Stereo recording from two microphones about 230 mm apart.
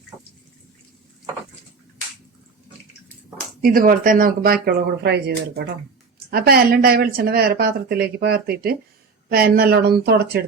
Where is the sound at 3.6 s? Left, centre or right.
Right.